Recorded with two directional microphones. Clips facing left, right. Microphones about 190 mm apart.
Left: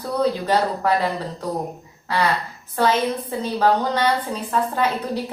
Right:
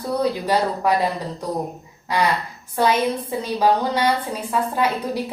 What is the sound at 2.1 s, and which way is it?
Speech, 15° right (ahead or behind).